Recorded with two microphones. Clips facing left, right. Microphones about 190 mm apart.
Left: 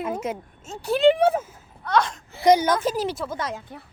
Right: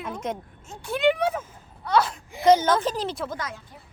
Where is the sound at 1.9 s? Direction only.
5° right (ahead or behind).